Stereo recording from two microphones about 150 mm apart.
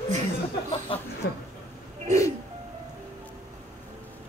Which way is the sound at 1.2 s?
90° left.